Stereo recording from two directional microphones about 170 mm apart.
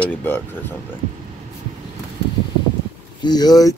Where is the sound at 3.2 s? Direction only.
25° left (ahead or behind).